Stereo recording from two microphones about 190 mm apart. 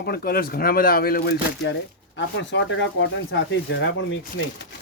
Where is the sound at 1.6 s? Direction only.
70° left (ahead or behind).